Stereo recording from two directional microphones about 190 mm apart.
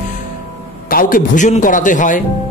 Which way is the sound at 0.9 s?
50° left (ahead or behind).